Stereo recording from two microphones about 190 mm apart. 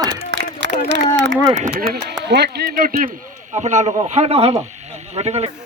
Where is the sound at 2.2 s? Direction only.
60° right (ahead or behind).